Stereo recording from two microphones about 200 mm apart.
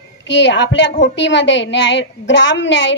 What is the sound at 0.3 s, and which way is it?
A woman's voice, 65° left (ahead or behind).